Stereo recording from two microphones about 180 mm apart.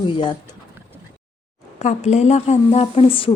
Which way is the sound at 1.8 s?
40° left (ahead or behind).